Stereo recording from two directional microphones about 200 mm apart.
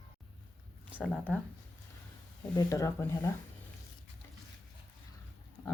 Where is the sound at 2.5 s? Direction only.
15° left (ahead or behind).